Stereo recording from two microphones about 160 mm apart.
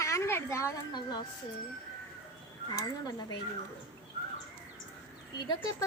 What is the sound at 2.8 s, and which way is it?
Speech, 25° left (ahead or behind).